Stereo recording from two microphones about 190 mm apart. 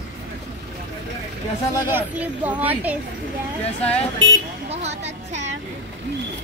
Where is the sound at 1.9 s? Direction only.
10° right (ahead or behind).